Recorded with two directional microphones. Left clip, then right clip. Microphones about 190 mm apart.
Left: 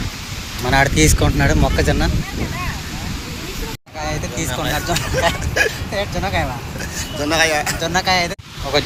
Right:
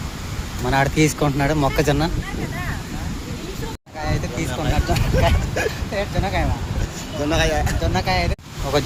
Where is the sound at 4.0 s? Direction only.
Centre (ahead or behind).